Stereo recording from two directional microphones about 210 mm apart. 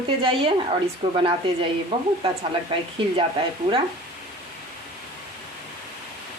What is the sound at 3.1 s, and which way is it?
Speech, 25° right (ahead or behind).